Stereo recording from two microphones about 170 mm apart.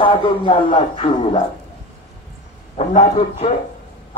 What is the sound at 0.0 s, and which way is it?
A man's voice, 30° left (ahead or behind).